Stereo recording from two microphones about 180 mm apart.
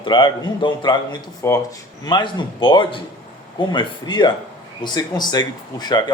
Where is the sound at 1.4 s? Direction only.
15° left (ahead or behind).